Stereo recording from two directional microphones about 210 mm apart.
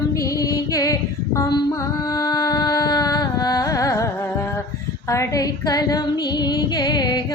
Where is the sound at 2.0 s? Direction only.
20° left (ahead or behind).